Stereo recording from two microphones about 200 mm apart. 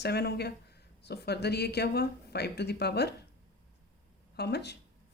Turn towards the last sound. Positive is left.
turn(degrees=55)  # may be behind; listen again after turning